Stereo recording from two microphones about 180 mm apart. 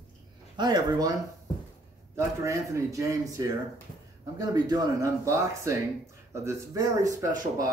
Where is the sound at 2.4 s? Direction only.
15° right (ahead or behind).